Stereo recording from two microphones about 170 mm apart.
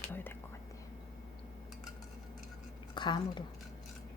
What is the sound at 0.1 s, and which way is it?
Whispering, 10° left (ahead or behind).